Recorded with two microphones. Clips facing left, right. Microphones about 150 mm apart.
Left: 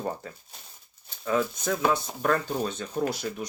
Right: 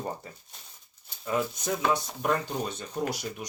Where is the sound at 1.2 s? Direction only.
15° right (ahead or behind).